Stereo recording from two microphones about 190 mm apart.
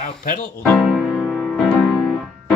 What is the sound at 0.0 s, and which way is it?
Speech, 45° left (ahead or behind).